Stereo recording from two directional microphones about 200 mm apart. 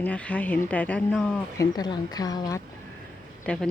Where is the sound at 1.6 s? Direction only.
20° left (ahead or behind).